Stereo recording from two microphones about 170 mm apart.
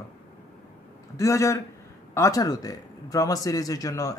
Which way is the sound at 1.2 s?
20° left (ahead or behind).